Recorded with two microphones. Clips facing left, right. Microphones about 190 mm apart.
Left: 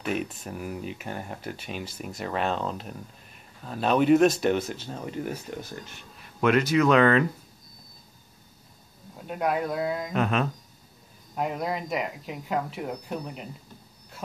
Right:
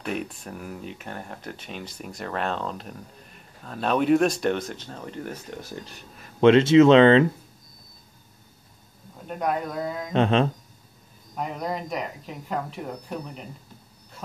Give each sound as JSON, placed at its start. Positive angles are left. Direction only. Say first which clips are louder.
{"t": 0.0, "sound": "speech", "louder": "left 1 dB", "side_deg": 5}
{"t": 6.4, "sound": "speech", "louder": "right 7 dB", "side_deg": -25}
{"t": 9.3, "sound": "speech", "louder": "even", "side_deg": 5}
{"t": 10.1, "sound": "speech", "louder": "right 7 dB", "side_deg": -30}
{"t": 11.3, "sound": "speech", "louder": "left 1 dB", "side_deg": 5}